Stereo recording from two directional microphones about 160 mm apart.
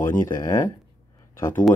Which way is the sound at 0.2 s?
15° left (ahead or behind).